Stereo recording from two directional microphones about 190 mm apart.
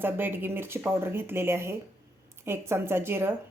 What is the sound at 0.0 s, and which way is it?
A woman's voice, 10° right (ahead or behind).